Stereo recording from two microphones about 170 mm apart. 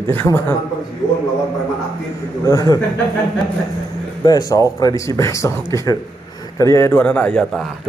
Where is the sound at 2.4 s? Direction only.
20° left (ahead or behind).